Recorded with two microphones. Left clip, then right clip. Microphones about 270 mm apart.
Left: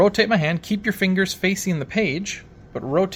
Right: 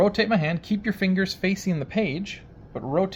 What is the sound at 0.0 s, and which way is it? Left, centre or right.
Speech, left.